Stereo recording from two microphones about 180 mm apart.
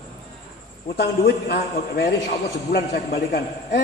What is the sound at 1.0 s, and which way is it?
A man's voice, 65° left (ahead or behind).